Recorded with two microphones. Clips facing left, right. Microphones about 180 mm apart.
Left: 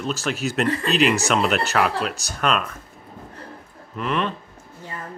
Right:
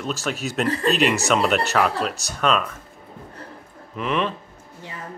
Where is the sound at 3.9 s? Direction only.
Centre (ahead or behind).